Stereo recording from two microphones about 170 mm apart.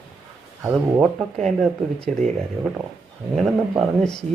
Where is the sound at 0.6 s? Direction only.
Centre (ahead or behind).